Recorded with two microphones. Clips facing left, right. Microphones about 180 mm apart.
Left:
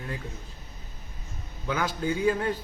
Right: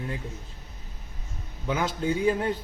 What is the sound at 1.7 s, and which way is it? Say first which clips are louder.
Speech: right 1 dB; 20° right (ahead or behind).